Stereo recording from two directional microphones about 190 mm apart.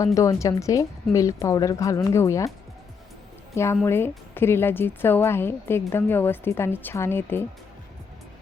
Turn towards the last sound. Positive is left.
turn(degrees=10)  # may be behind; listen again after turning